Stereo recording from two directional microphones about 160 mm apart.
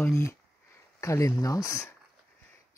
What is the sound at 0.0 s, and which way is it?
Speech, 20° left (ahead or behind).